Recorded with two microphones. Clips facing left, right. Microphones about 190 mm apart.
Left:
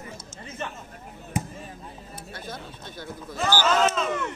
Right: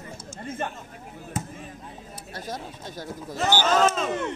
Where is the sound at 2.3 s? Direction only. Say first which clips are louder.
Right 4 dB; 40° right (ahead or behind).